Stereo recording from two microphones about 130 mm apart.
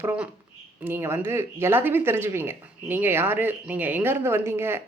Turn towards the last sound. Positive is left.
turn(degrees=-20)  # may be behind; listen again after turning